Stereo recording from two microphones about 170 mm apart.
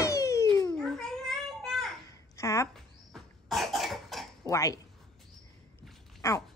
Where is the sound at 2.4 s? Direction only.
15° left (ahead or behind).